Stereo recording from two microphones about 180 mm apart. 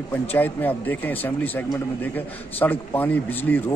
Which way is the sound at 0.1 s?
10° left (ahead or behind).